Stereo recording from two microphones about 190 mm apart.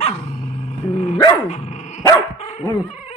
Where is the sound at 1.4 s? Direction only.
35° left (ahead or behind).